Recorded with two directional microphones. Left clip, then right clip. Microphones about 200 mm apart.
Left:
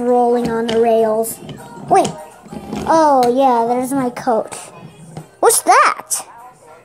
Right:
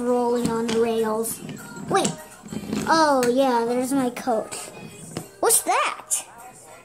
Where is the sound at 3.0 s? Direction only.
Centre (ahead or behind); by 6.2 s 25° left (ahead or behind).